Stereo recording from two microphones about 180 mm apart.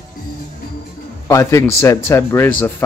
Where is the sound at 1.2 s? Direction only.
15° left (ahead or behind).